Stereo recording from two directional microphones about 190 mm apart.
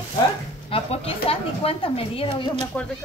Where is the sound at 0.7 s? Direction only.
30° left (ahead or behind).